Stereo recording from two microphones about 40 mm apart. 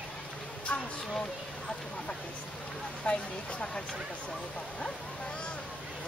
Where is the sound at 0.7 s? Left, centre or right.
Left.